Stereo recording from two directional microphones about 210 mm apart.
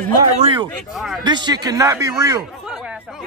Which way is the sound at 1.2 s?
20° right (ahead or behind).